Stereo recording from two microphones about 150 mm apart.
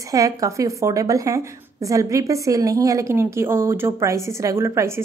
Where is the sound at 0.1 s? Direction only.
20° right (ahead or behind).